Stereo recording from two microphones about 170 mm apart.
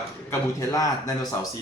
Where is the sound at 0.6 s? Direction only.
20° left (ahead or behind).